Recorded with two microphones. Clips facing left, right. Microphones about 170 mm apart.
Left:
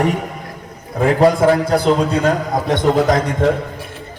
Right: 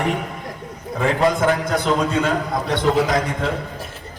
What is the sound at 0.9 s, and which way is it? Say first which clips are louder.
A man's voice: left 5 dB; 35° left (ahead or behind).